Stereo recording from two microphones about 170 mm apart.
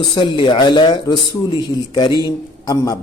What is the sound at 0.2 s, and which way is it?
A man's voice, 30° left (ahead or behind).